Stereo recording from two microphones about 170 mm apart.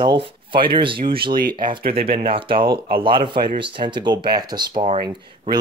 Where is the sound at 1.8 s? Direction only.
60° right (ahead or behind).